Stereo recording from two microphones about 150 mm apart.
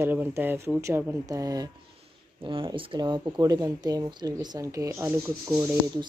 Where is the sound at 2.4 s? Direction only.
35° right (ahead or behind).